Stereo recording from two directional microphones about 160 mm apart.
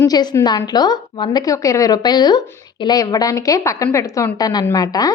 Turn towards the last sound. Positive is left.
turn(degrees=25)  # may be behind; listen again after turning